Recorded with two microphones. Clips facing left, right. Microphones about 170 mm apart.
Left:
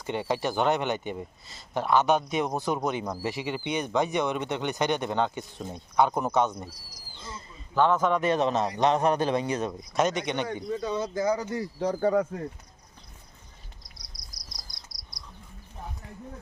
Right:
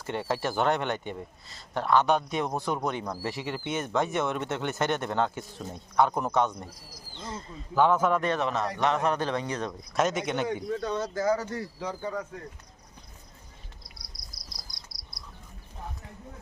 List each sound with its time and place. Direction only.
0.0 s speech: centre (ahead or behind)
7.2 s a sound: 40° right (ahead or behind)
7.8 s speech: 10° right (ahead or behind)
8.4 s speech: 20° left (ahead or behind)
9.9 s speech: centre (ahead or behind); by 11.7 s 15° left (ahead or behind)
11.9 s speech: 70° left (ahead or behind)
14.1 s cricket: 25° right (ahead or behind)